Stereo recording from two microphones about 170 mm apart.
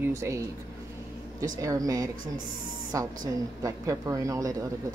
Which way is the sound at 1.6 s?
20° right (ahead or behind).